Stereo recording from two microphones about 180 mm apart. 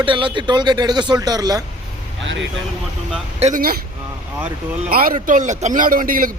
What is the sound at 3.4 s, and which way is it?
Speech, 40° right (ahead or behind).